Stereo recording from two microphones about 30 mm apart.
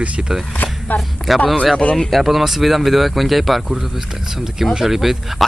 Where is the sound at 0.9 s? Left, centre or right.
Left.